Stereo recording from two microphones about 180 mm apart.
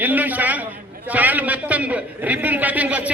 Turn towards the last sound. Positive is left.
turn(degrees=-10)  # may be behind; listen again after turning